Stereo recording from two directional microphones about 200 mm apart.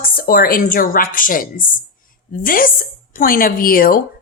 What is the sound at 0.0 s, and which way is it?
Speech, 45° left (ahead or behind).